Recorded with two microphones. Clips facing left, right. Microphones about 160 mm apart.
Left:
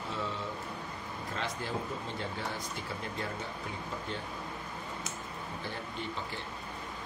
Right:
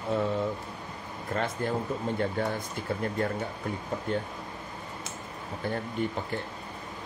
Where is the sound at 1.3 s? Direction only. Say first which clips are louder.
Right 8 dB; 50° right (ahead or behind).